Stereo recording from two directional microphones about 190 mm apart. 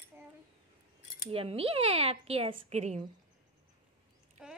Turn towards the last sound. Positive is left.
turn(degrees=-5)  # may be behind; listen again after turning